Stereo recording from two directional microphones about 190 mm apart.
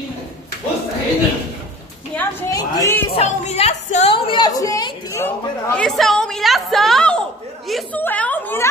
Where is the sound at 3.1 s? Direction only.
30° left (ahead or behind).